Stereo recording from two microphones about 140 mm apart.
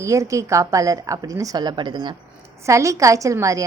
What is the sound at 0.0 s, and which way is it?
Speech, 20° right (ahead or behind).